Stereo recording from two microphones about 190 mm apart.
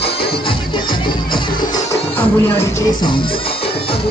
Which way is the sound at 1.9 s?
10° left (ahead or behind).